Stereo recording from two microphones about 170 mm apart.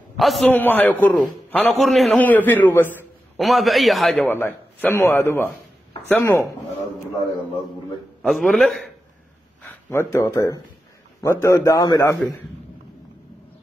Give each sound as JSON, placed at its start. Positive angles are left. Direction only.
{"t": 0.2, "sound": "a man's voice", "side_deg": 0}
{"t": 0.5, "sound": "a man's voice", "side_deg": 10}
{"t": 3.3, "sound": "a man's voice", "side_deg": 0}
{"t": 4.3, "sound": "a man's voice", "side_deg": 10}
{"t": 8.2, "sound": "a man's voice", "side_deg": 0}
{"t": 10.1, "sound": "a man's voice", "side_deg": 20}